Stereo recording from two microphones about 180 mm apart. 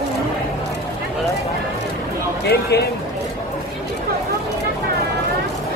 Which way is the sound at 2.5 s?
65° left (ahead or behind).